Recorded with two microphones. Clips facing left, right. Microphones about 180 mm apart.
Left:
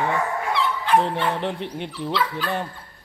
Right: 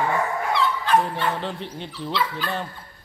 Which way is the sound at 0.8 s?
20° left (ahead or behind).